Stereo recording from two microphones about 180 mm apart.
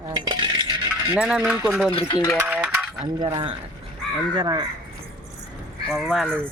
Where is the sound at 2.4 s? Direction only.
10° right (ahead or behind).